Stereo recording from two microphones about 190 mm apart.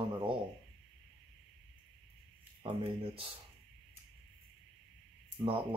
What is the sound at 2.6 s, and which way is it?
Speech, 30° right (ahead or behind).